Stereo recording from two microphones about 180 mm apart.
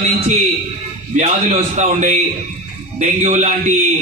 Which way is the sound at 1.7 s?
40° right (ahead or behind).